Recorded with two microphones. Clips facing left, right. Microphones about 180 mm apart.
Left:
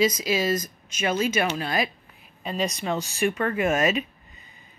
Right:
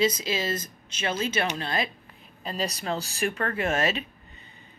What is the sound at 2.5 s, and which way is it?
Speech, 35° right (ahead or behind).